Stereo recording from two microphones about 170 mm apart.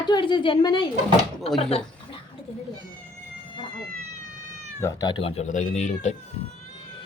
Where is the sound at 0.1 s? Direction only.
30° left (ahead or behind).